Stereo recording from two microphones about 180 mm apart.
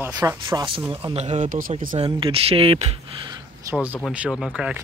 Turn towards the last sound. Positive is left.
turn(degrees=-5)  # may be behind; listen again after turning